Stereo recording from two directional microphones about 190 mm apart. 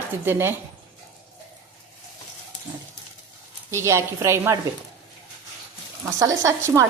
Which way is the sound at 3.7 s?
15° right (ahead or behind).